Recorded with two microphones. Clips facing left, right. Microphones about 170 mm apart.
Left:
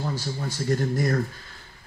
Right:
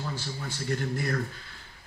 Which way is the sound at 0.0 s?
40° left (ahead or behind).